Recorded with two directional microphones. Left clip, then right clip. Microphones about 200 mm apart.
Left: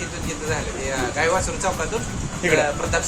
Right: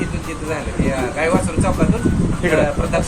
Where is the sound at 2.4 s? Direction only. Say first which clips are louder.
Right 2 dB; centre (ahead or behind).